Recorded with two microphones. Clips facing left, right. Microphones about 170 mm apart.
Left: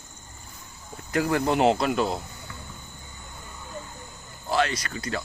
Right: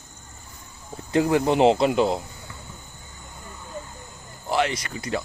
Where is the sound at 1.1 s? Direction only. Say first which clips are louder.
Right 4 dB; 20° right (ahead or behind).